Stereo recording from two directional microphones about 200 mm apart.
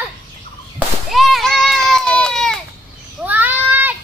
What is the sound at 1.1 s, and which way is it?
Children playing, centre (ahead or behind).